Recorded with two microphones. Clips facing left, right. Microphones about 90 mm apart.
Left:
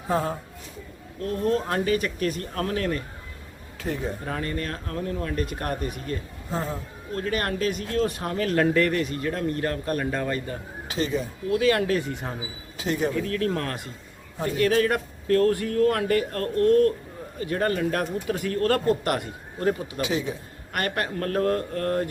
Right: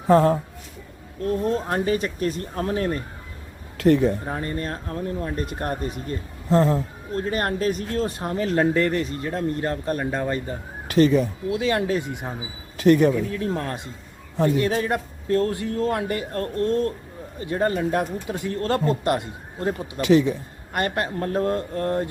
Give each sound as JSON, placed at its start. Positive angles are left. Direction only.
{"t": 0.1, "sound": "speech", "side_deg": -65}
{"t": 1.2, "sound": "speech", "side_deg": -30}
{"t": 3.8, "sound": "a man's voice", "side_deg": -70}
{"t": 4.3, "sound": "speech", "side_deg": -25}
{"t": 6.5, "sound": "speech", "side_deg": -90}
{"t": 7.2, "sound": "speech", "side_deg": -30}
{"t": 8.3, "sound": "speech", "side_deg": -25}
{"t": 10.8, "sound": "speech", "side_deg": -60}
{"t": 11.5, "sound": "speech", "side_deg": -25}
{"t": 12.7, "sound": "a man's voice", "side_deg": -60}
{"t": 13.2, "sound": "speech", "side_deg": -15}
{"t": 20.7, "sound": "speech", "side_deg": -25}